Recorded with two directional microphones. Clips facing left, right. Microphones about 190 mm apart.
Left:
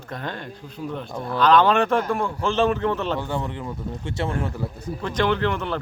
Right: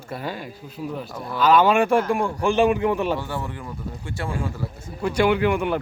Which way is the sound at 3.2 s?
20° left (ahead or behind).